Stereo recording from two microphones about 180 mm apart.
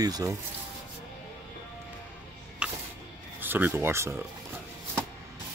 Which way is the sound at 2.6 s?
5° right (ahead or behind).